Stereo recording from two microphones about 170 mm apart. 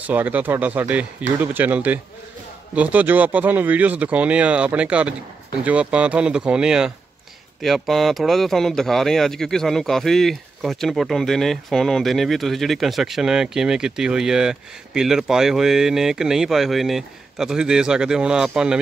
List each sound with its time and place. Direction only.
0.0 s speech: 10° right (ahead or behind)